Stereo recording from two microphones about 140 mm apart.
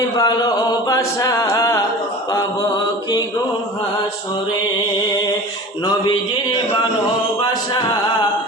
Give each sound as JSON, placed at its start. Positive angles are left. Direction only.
{"t": 0.2, "sound": "a capella", "side_deg": 30}
{"t": 2.3, "sound": "mantra", "side_deg": 25}
{"t": 7.3, "sound": "a capella", "side_deg": 30}